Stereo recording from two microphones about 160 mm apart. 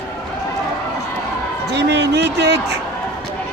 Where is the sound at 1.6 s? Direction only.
90° right.